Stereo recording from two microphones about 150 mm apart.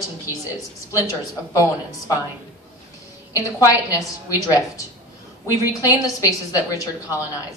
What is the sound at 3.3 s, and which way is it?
Speech, 20° left (ahead or behind).